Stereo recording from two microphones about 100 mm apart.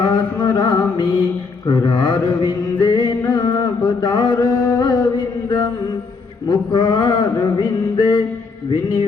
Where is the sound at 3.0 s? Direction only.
40° left (ahead or behind).